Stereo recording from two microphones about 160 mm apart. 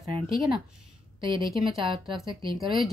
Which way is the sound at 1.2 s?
30° right (ahead or behind).